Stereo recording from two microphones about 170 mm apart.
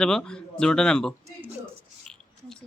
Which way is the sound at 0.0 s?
5° left (ahead or behind).